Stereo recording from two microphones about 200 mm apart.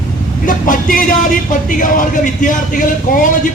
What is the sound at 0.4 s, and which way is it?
Speech, 45° left (ahead or behind).